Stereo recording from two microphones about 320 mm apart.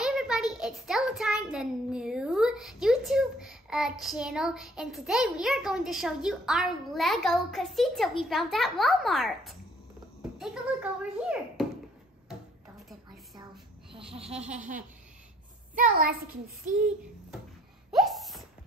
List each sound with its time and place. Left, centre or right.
0.0 s a child's voice: centre
15.8 s a child's voice: right
17.9 s a sound: centre